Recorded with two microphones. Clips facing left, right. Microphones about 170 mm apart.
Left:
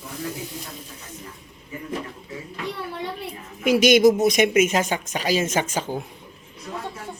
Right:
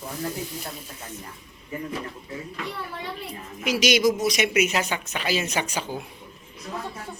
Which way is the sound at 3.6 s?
50° left (ahead or behind).